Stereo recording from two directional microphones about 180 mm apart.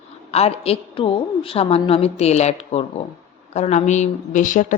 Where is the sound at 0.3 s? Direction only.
35° left (ahead or behind).